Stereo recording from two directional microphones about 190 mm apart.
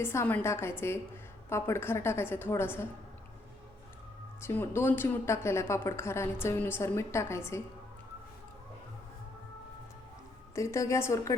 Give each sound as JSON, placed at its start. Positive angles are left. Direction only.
{"t": 0.0, "sound": "speech", "side_deg": 15}
{"t": 4.4, "sound": "speech", "side_deg": 15}
{"t": 10.5, "sound": "speech", "side_deg": 15}